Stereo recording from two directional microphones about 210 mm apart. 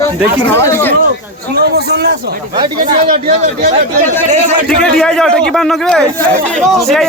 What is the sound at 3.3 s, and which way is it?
Speech, 35° right (ahead or behind).